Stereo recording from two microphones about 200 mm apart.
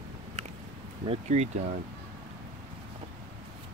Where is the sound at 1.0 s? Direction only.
30° right (ahead or behind).